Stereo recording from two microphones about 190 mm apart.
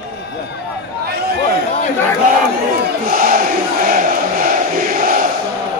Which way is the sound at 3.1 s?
45° right (ahead or behind).